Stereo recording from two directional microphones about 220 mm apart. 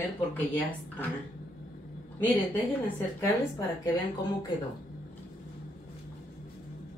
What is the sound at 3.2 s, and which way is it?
Speech, 15° left (ahead or behind).